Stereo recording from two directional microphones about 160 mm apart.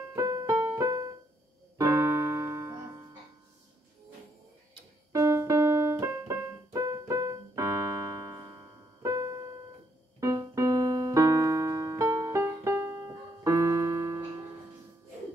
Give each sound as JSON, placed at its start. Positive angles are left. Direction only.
{"t": 0.1, "sound": "music", "side_deg": -20}
{"t": 1.8, "sound": "keyboard", "side_deg": -20}
{"t": 5.1, "sound": "keyboard", "side_deg": -20}